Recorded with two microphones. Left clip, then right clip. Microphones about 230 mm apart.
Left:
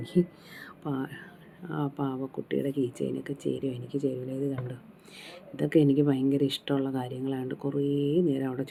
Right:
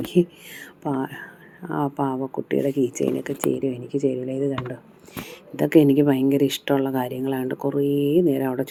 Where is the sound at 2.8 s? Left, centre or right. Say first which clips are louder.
Right 8 dB; right.